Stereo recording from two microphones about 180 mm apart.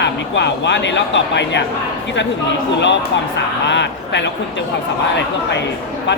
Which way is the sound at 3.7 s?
80° left.